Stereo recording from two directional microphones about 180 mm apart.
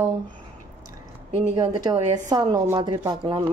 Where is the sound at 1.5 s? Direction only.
20° right (ahead or behind).